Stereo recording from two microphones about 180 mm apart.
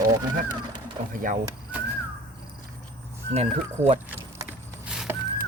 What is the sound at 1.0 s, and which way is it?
Speech, 40° right (ahead or behind).